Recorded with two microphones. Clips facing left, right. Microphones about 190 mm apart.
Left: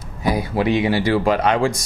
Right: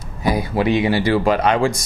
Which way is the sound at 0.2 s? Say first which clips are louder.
Right 1 dB; 15° right (ahead or behind).